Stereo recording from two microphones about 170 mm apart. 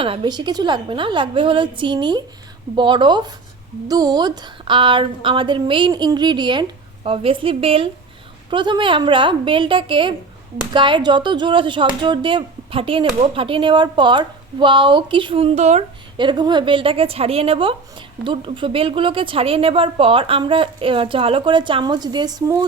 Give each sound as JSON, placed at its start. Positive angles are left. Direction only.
{"t": 0.0, "sound": "a woman's voice", "side_deg": -30}
{"t": 16.1, "sound": "a woman's voice", "side_deg": -25}